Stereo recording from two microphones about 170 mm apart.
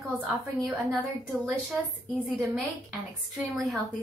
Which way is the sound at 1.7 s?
5° right (ahead or behind).